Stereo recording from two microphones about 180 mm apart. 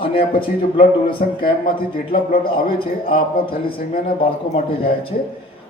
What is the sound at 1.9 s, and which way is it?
A man's voice, 55° left (ahead or behind).